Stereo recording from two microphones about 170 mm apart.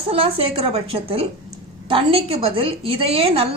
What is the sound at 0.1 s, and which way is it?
A woman's voice, 35° right (ahead or behind).